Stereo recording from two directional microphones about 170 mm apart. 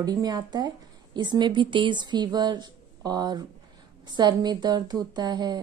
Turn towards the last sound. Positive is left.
turn(degrees=-25)  # may be behind; listen again after turning